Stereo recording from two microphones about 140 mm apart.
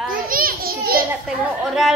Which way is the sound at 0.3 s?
90° right.